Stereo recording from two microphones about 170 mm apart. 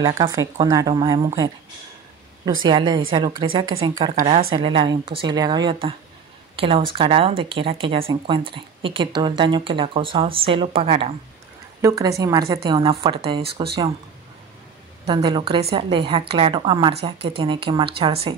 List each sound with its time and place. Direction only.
0.0 s a woman's voice: 20° right (ahead or behind)
2.6 s a woman's voice: 25° right (ahead or behind)
4.2 s a woman's voice: 50° right (ahead or behind)
4.6 s a woman's voice: 30° right (ahead or behind)
11.8 s a woman's voice: 20° right (ahead or behind)
15.0 s a woman's voice: 25° right (ahead or behind)